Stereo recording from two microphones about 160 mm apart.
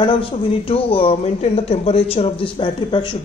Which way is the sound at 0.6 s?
35° left (ahead or behind).